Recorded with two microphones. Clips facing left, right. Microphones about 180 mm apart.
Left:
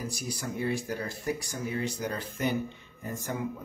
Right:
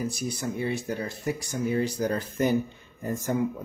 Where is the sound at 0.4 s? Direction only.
25° right (ahead or behind).